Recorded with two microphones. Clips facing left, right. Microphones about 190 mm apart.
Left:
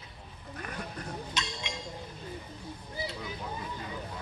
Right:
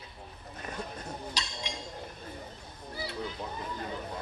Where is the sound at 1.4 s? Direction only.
35° right (ahead or behind).